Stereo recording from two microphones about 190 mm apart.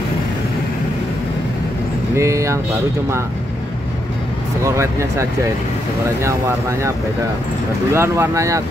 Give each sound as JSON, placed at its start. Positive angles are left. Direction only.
{"t": 2.1, "sound": "speech", "side_deg": -15}
{"t": 4.6, "sound": "speech", "side_deg": -15}
{"t": 7.9, "sound": "speech", "side_deg": -15}